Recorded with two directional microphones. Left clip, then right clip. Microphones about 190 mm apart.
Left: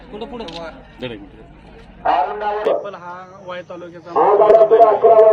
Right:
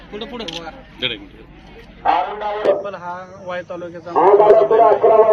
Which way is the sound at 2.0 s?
45° right (ahead or behind).